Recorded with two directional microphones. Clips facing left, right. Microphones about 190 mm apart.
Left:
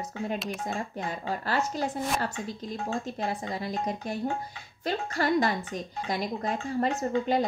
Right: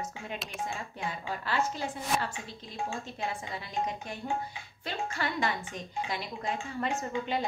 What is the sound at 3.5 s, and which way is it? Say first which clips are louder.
Speech: left 3 dB; 40° left (ahead or behind).